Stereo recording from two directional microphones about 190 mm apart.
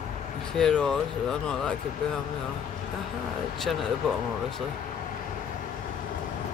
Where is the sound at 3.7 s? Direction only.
Centre (ahead or behind).